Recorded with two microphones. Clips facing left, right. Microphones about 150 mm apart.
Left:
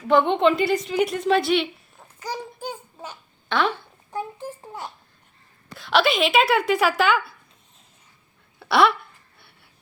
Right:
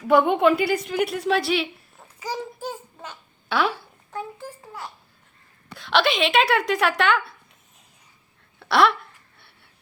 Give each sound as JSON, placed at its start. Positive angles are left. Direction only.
{"t": 0.0, "sound": "a woman's voice", "side_deg": -10}
{"t": 4.1, "sound": "a child's voice", "side_deg": 15}
{"t": 5.7, "sound": "speech", "side_deg": 0}
{"t": 8.5, "sound": "a sound", "side_deg": 0}